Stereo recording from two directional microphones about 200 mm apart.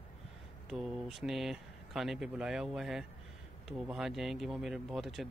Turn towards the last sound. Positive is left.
turn(degrees=0)  # may be behind; listen again after turning